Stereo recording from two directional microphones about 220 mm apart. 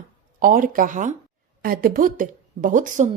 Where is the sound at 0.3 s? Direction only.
40° right (ahead or behind).